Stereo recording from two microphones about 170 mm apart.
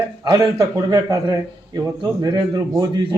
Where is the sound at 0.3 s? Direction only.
20° right (ahead or behind).